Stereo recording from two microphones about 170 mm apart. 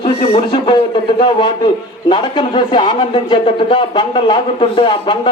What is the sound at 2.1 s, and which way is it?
Speech, 30° left (ahead or behind).